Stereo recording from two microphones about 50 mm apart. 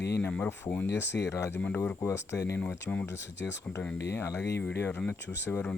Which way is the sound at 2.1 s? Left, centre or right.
Left.